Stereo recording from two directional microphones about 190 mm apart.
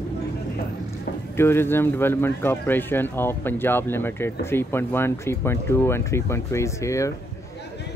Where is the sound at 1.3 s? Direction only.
10° left (ahead or behind).